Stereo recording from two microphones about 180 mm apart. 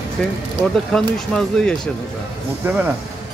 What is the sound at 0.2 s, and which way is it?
Speech, 5° left (ahead or behind).